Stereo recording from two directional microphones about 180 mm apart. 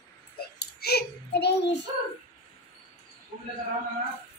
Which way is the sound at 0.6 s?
60° left (ahead or behind).